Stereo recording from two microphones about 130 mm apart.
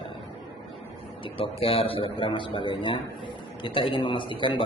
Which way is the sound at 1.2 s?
45° left (ahead or behind).